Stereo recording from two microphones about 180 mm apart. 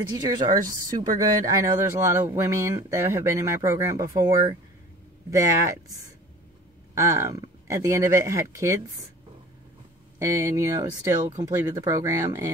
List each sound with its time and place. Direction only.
0.1 s a woman's voice: 20° right (ahead or behind)
7.0 s speech: 15° right (ahead or behind)
10.1 s speech: 15° right (ahead or behind)